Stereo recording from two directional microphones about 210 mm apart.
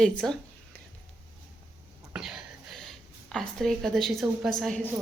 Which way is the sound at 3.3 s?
Centre (ahead or behind).